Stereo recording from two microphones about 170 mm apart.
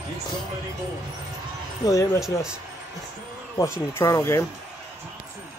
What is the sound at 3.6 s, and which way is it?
Speech, 15° left (ahead or behind).